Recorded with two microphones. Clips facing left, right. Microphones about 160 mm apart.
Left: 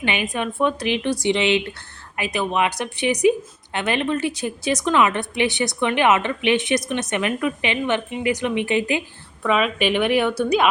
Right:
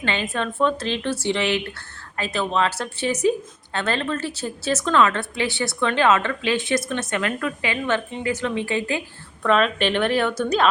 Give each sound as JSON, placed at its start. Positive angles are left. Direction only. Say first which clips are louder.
{"t": 0.0, "sound": "speech", "louder": "left 1 dB", "side_deg": 15}
{"t": 9.4, "sound": "speech", "louder": "right 1 dB", "side_deg": 5}